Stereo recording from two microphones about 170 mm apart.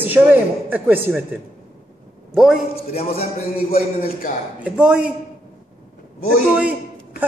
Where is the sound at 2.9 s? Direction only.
35° left (ahead or behind).